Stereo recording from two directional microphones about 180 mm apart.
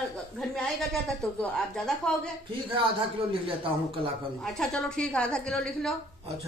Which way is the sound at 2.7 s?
30° right (ahead or behind).